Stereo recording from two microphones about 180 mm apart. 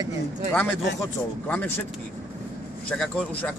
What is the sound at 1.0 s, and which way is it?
Speech, 10° left (ahead or behind).